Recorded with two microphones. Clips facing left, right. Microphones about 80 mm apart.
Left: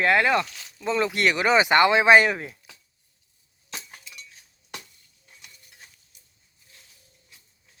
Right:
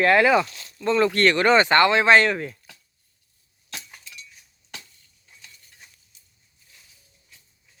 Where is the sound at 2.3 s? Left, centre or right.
Centre.